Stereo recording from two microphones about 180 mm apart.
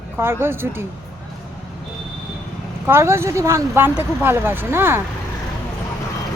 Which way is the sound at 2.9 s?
15° right (ahead or behind).